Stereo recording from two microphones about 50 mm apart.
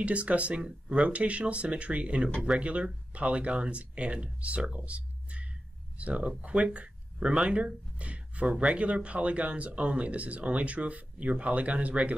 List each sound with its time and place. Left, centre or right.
0.0 s speech: right
4.6 s a sound: right
5.9 s speech: right